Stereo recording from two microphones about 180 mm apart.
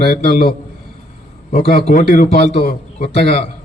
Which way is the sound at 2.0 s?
50° left (ahead or behind).